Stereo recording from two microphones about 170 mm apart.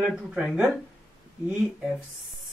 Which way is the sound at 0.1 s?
5° right (ahead or behind).